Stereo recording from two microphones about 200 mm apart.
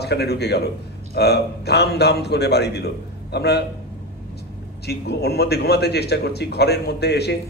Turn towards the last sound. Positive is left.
turn(degrees=55)  # may be behind; listen again after turning